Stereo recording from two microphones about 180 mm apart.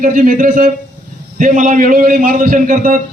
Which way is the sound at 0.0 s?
50° right (ahead or behind).